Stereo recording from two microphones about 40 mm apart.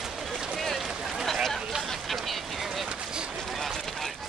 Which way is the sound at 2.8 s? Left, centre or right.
Centre.